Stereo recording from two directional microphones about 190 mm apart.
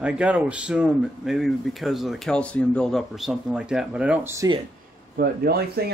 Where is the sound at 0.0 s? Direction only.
5° right (ahead or behind).